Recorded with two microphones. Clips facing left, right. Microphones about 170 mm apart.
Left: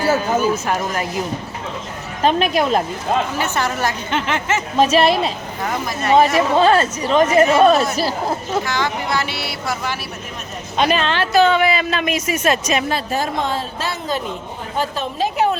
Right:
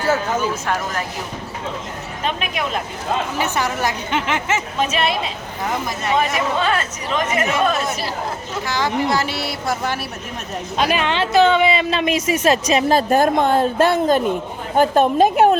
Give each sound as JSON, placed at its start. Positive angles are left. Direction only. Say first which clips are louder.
{"t": 0.0, "sound": "speech", "louder": "left 2 dB", "side_deg": 10}
{"t": 2.2, "sound": "speech", "louder": "left 8 dB", "side_deg": 35}
{"t": 3.3, "sound": "a woman's voice", "louder": "even", "side_deg": -15}
{"t": 4.8, "sound": "speech", "louder": "left 9 dB", "side_deg": 35}
{"t": 8.6, "sound": "a woman's voice", "louder": "right 2 dB", "side_deg": -35}
{"t": 10.8, "sound": "a woman's voice", "louder": "left 1 dB", "side_deg": -10}